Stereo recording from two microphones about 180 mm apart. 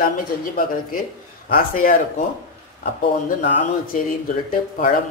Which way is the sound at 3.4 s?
45° left (ahead or behind).